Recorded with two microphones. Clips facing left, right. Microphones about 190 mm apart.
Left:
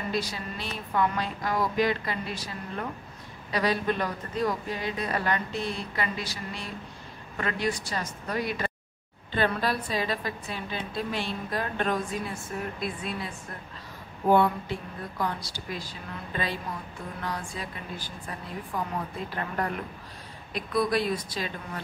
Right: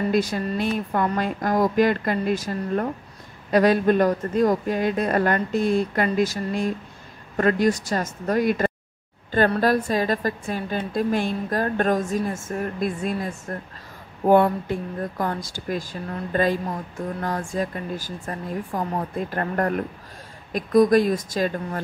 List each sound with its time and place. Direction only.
0.1 s speech: 50° right (ahead or behind)
14.3 s speech: 50° right (ahead or behind)